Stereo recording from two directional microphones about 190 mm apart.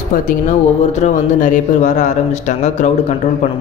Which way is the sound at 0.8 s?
40° left (ahead or behind).